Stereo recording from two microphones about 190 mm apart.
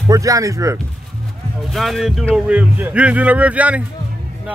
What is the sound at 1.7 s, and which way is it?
Speech, centre (ahead or behind).